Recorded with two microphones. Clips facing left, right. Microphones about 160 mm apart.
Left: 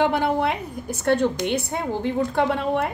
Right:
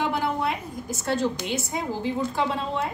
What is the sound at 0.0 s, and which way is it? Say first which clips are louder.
A woman's voice: left 5 dB; 65° left (ahead or behind).